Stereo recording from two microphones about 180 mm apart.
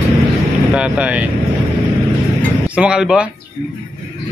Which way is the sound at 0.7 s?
5° right (ahead or behind).